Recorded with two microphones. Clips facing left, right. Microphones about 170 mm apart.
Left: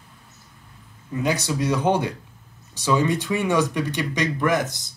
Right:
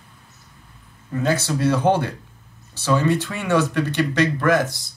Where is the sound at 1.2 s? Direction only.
15° left (ahead or behind).